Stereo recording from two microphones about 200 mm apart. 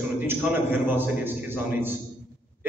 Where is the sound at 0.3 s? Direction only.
10° right (ahead or behind).